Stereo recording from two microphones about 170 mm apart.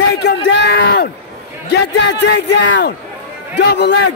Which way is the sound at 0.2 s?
85° left.